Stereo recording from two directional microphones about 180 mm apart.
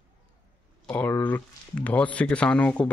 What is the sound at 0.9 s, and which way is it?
Speech, 10° left (ahead or behind).